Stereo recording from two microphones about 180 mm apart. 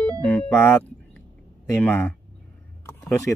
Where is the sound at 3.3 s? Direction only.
5° left (ahead or behind).